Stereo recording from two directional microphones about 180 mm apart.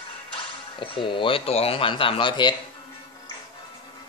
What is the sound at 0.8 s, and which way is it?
Speech, 30° left (ahead or behind).